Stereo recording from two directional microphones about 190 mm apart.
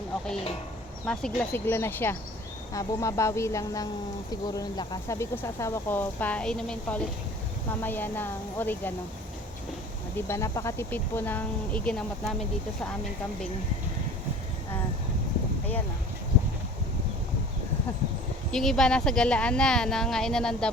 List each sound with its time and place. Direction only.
1.0 s speech: 5° left (ahead or behind)
10.2 s speech: 15° left (ahead or behind)
18.5 s speech: 5° left (ahead or behind)